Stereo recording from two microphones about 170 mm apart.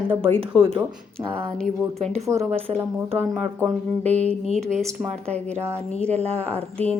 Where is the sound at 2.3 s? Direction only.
15° right (ahead or behind).